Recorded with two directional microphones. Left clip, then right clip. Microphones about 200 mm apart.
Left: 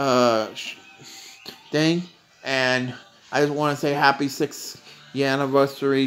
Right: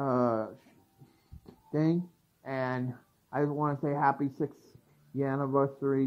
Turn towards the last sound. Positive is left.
turn(degrees=20)  # may be behind; listen again after turning